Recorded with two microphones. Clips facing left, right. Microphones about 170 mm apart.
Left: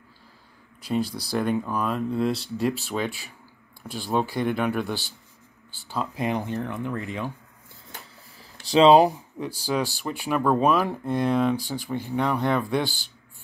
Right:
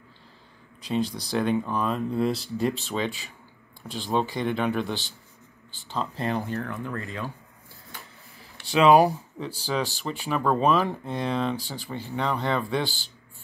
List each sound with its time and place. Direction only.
0.8 s speech: 10° left (ahead or behind)
8.4 s speech: 35° left (ahead or behind); by 13.1 s 15° left (ahead or behind)